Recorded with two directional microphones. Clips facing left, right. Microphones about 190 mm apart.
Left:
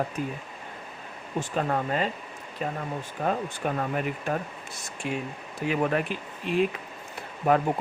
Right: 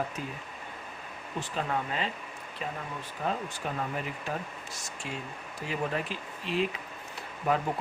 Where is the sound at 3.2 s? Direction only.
60° left (ahead or behind).